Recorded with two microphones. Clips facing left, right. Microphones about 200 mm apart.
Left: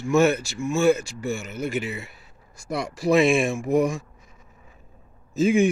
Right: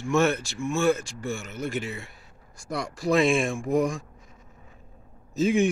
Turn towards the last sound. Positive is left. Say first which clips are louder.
# left 3 dB
turn(degrees=0)  # may be behind; listen again after turning